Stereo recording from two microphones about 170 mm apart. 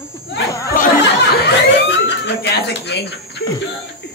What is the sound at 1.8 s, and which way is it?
Speech, 90° left.